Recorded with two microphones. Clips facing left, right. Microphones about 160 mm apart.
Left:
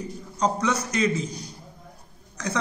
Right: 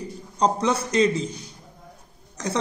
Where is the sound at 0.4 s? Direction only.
30° right (ahead or behind).